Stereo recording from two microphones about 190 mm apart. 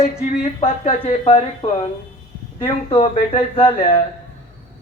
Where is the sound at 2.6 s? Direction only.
30° left (ahead or behind).